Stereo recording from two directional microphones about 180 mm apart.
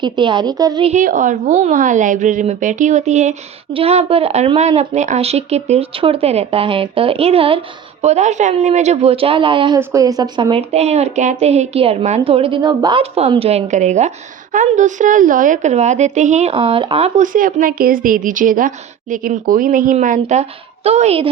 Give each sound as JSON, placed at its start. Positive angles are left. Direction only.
{"t": 0.0, "sound": "a woman's voice", "side_deg": -25}
{"t": 0.9, "sound": "a woman's voice", "side_deg": -45}